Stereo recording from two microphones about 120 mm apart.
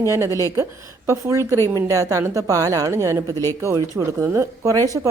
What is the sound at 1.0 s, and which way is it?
A woman's voice, 25° right (ahead or behind).